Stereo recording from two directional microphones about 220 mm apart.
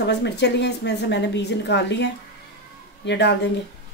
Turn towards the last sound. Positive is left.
turn(degrees=50)  # may be behind; listen again after turning